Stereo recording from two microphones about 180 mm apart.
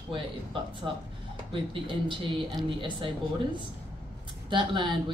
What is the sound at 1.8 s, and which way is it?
Speech, 25° right (ahead or behind).